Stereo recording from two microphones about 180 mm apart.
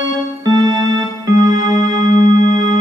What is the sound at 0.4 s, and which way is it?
Music, 25° right (ahead or behind).